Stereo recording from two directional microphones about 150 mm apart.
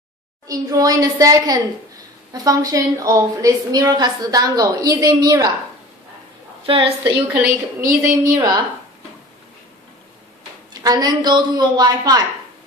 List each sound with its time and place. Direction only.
0.5 s a woman's voice: 25° right (ahead or behind)
6.6 s a woman's voice: 35° right (ahead or behind)
7.8 s a woman's voice: 25° right (ahead or behind)
10.7 s a woman's voice: 25° right (ahead or behind)